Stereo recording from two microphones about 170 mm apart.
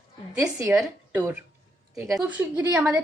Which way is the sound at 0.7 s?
10° right (ahead or behind).